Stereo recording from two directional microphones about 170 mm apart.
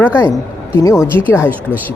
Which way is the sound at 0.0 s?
15° left (ahead or behind).